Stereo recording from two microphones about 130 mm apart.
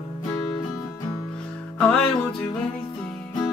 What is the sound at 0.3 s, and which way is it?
Music, 25° left (ahead or behind).